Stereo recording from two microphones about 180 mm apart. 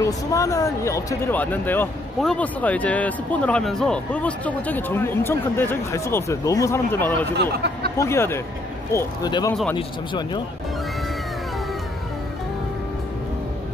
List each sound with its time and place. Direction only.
0.0 s speech: 15° left (ahead or behind)
7.3 s speech: 65° right (ahead or behind)
8.0 s speech: 15° left (ahead or behind)
9.5 s speech: 5° left (ahead or behind)
9.8 s speech: 25° left (ahead or behind)